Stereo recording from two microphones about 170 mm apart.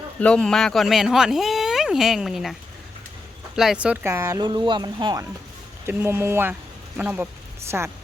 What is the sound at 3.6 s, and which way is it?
Speech, 5° right (ahead or behind).